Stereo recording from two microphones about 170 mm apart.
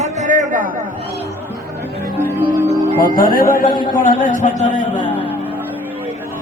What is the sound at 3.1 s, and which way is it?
Speech, 55° right (ahead or behind).